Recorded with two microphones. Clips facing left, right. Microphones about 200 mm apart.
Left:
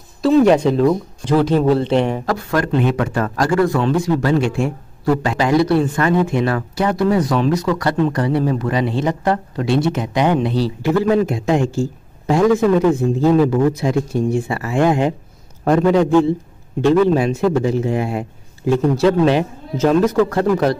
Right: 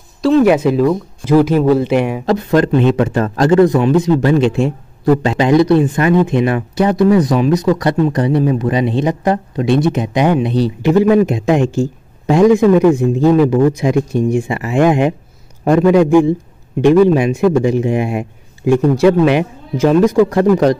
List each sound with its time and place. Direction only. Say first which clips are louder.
0.5 s speech: right 2 dB; 5° right (ahead or behind)
2.2 s a man's voice: right 6 dB; 20° right (ahead or behind)